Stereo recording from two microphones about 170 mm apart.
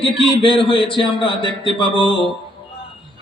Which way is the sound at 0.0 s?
30° left (ahead or behind).